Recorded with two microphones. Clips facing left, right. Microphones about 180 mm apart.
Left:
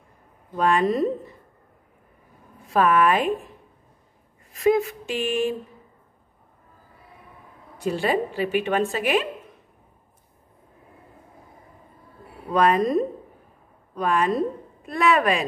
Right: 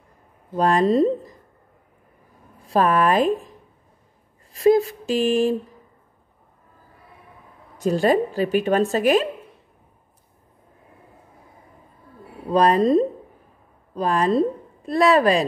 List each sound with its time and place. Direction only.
0.6 s speech: 35° right (ahead or behind)
2.7 s speech: 35° right (ahead or behind)
4.5 s a sound: 35° right (ahead or behind)
7.7 s speech: 40° right (ahead or behind)
12.4 s speech: 35° right (ahead or behind)